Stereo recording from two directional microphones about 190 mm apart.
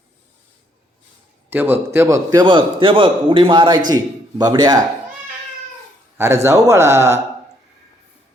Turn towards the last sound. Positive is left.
turn(degrees=-15)  # may be behind; listen again after turning